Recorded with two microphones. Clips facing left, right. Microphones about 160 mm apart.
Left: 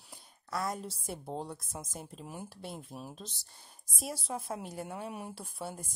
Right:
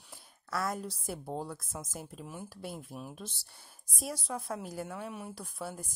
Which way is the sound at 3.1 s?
20° left (ahead or behind).